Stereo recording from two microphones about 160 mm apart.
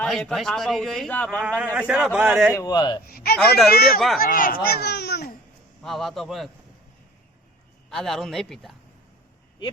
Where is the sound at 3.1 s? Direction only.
70° left (ahead or behind); by 5.2 s 90° left.